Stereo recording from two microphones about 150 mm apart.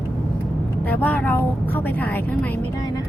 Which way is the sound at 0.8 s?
10° left (ahead or behind).